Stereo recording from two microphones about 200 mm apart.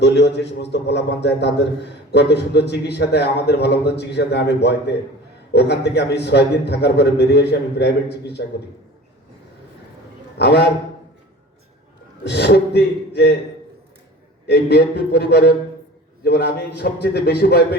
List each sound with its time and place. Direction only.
0.0 s a man's voice: 60° left (ahead or behind)
10.3 s a man's voice: 55° left (ahead or behind)
12.2 s a man's voice: 60° left (ahead or behind)
14.4 s a man's voice: 55° left (ahead or behind)